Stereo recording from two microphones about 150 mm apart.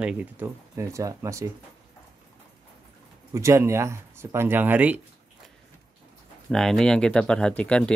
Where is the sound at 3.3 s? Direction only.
20° right (ahead or behind).